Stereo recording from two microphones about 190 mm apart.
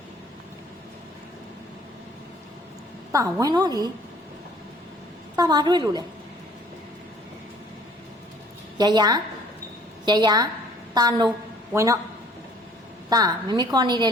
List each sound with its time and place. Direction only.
3.1 s a woman's voice: 15° right (ahead or behind)
5.4 s a woman's voice: 20° right (ahead or behind)
8.8 s a woman's voice: 20° right (ahead or behind)
13.1 s a woman's voice: 20° right (ahead or behind)